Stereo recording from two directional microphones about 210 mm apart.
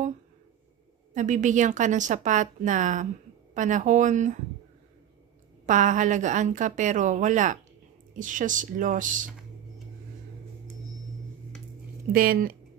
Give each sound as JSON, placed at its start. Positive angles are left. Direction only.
{"t": 1.1, "sound": "a woman's voice", "side_deg": -35}
{"t": 5.7, "sound": "a woman's voice", "side_deg": -35}
{"t": 12.1, "sound": "speech", "side_deg": -45}